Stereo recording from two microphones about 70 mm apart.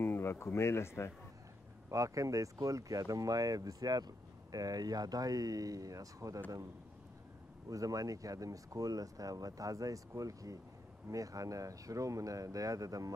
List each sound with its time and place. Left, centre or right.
0.0 s speech: left
1.9 s speech: right
7.7 s speech: right